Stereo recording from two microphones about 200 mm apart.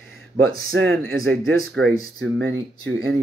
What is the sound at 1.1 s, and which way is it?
Speech, 55° right (ahead or behind).